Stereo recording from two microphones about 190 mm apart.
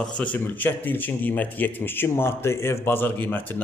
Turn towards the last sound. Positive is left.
turn(degrees=10)  # may be behind; listen again after turning